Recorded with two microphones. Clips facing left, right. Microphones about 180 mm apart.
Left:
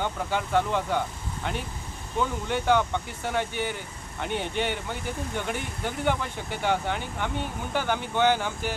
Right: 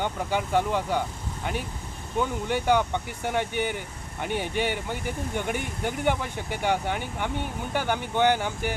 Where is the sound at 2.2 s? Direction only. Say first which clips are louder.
Right 1 dB; 10° right (ahead or behind).